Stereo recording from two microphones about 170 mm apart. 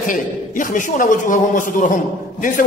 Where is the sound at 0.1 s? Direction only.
50° left (ahead or behind).